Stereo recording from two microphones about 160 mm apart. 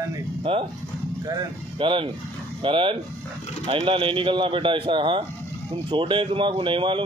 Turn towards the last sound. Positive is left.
turn(degrees=-30)  # may be behind; listen again after turning